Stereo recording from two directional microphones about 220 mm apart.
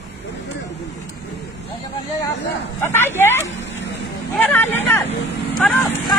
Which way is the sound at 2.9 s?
10° left (ahead or behind).